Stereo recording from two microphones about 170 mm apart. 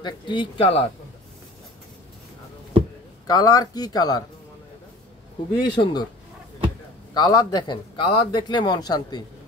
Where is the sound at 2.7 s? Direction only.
35° right (ahead or behind).